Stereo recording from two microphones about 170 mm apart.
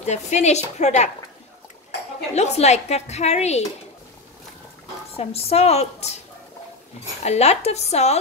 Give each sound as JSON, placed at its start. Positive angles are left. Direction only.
{"t": 0.0, "sound": "a woman's voice", "side_deg": 40}
{"t": 2.3, "sound": "a woman's voice", "side_deg": 40}
{"t": 5.1, "sound": "a woman's voice", "side_deg": 35}
{"t": 7.2, "sound": "a woman's voice", "side_deg": 40}